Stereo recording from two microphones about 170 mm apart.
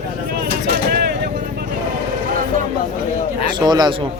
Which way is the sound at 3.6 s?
25° right (ahead or behind).